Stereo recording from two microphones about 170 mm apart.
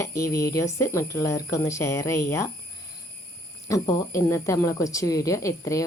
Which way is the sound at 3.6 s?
20° left (ahead or behind).